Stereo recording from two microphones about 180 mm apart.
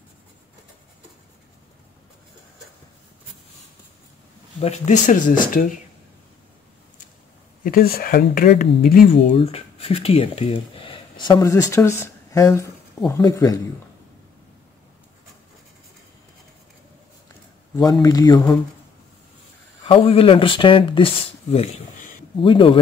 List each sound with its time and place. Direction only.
4.6 s speech: 40° left (ahead or behind)
7.6 s speech: 55° left (ahead or behind)
9.3 s speech: 35° left (ahead or behind)
18.0 s speech: 20° left (ahead or behind)
19.9 s speech: 30° left (ahead or behind)